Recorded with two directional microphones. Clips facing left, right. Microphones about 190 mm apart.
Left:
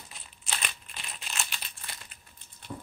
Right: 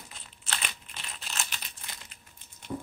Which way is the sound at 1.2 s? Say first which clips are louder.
Even; 15° left (ahead or behind).